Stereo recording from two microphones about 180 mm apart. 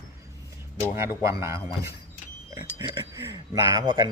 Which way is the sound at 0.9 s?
15° right (ahead or behind).